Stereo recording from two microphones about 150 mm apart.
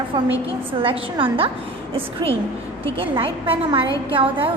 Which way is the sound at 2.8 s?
35° right (ahead or behind).